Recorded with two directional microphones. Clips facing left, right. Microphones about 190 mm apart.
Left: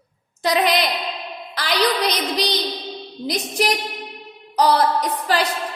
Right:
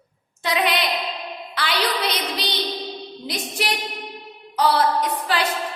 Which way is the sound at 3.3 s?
40° left (ahead or behind).